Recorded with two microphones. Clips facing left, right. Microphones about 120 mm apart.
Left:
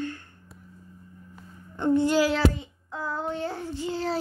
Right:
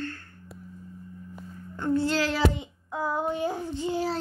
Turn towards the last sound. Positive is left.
turn(degrees=-15)  # may be behind; listen again after turning